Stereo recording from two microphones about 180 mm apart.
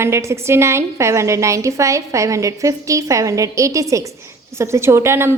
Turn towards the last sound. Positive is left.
turn(degrees=-15)  # may be behind; listen again after turning